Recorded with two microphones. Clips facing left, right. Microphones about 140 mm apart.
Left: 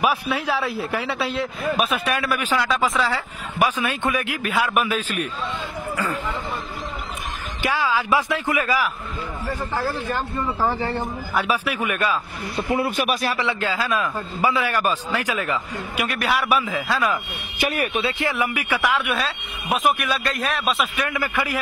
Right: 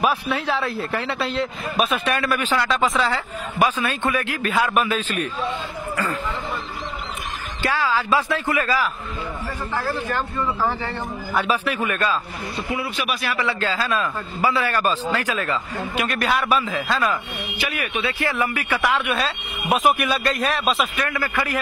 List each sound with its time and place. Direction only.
0.0 s speech: 5° left (ahead or behind)
7.6 s speech: 15° left (ahead or behind)
10.6 s speech: 15° left (ahead or behind)
12.5 s speech: 55° left (ahead or behind); by 13.4 s 40° left (ahead or behind)
13.4 s speech: 15° left (ahead or behind)
17.6 s speech: 40° left (ahead or behind)
18.0 s speech: 15° left (ahead or behind); by 20.9 s centre (ahead or behind)
20.9 s speech: 15° left (ahead or behind)